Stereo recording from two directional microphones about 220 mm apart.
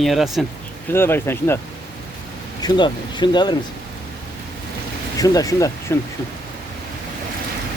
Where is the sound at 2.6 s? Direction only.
20° left (ahead or behind).